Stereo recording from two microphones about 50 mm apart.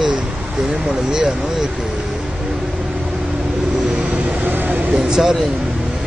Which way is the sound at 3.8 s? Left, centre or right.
Centre.